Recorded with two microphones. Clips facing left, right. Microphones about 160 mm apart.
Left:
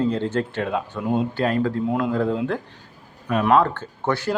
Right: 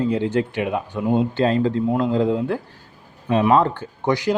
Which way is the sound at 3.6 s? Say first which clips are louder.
Right 3 dB; 15° right (ahead or behind).